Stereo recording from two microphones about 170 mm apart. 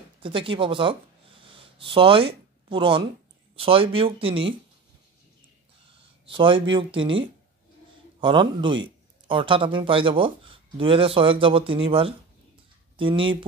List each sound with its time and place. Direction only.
0.2 s speech: 30° right (ahead or behind)
6.2 s speech: 30° right (ahead or behind)
8.2 s speech: 30° right (ahead or behind)